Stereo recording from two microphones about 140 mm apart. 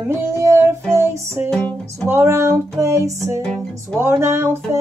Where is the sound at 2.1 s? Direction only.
20° right (ahead or behind).